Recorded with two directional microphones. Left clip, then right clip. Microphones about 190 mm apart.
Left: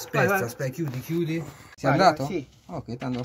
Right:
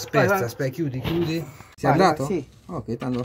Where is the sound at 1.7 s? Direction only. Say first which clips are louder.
Right 1 dB; 15° left (ahead or behind).